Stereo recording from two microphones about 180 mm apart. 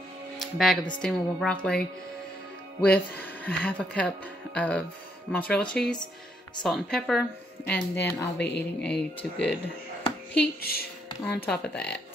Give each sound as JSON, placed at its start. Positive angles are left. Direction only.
{"t": 0.4, "sound": "speech", "side_deg": 0}
{"t": 2.8, "sound": "speech", "side_deg": 10}
{"t": 8.4, "sound": "speech", "side_deg": 70}
{"t": 8.8, "sound": "speech", "side_deg": 5}
{"t": 10.3, "sound": "speech", "side_deg": 60}
{"t": 11.5, "sound": "speech", "side_deg": 5}